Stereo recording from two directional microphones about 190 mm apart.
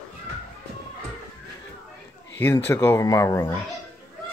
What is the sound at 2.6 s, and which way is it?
Speech, 10° left (ahead or behind).